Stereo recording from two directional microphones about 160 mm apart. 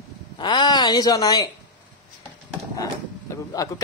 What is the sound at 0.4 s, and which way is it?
A woman's voice, 30° left (ahead or behind).